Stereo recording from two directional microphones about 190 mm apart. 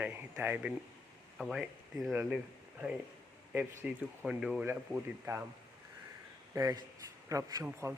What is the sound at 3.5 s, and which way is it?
Speech, 10° right (ahead or behind).